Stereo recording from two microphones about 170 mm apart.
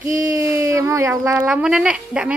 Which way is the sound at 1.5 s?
5° right (ahead or behind).